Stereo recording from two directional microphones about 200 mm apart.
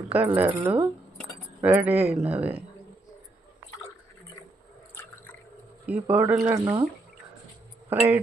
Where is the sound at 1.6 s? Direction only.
10° right (ahead or behind).